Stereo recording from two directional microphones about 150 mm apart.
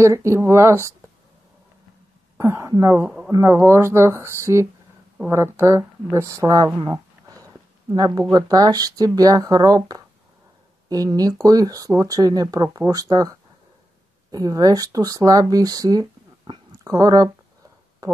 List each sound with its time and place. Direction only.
0.0 s speech: 20° right (ahead or behind)
2.3 s speech: 15° right (ahead or behind)